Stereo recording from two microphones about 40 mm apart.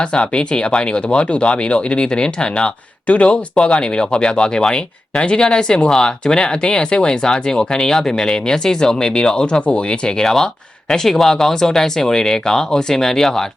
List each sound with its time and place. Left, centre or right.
0.0 s speech: left
10.2 s speech: centre